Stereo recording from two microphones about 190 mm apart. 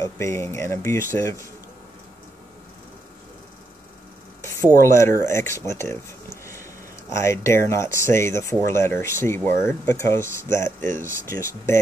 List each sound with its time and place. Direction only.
0.0 s speech: 15° left (ahead or behind)
4.8 s speech: 15° left (ahead or behind)
6.4 s a sound: 15° left (ahead or behind)
7.2 s speech: 15° left (ahead or behind)